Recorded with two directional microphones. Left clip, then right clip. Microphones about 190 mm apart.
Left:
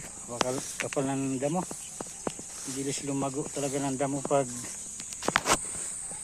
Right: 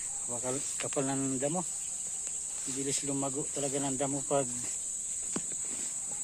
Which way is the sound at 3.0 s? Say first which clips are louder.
Left 3 dB; 10° right (ahead or behind).